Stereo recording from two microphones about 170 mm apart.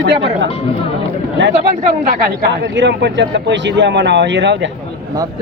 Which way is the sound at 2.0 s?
65° right (ahead or behind).